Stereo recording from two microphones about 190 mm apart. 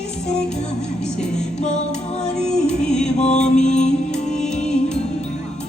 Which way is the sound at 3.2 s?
35° left (ahead or behind).